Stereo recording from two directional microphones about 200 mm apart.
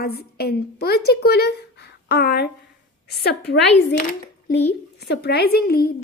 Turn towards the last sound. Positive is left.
turn(degrees=50)  # may be behind; listen again after turning